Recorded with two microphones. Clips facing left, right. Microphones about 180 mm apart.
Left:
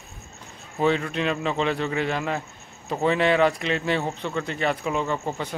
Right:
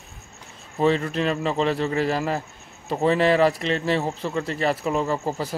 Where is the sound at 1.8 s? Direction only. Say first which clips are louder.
Right 3 dB; 35° right (ahead or behind).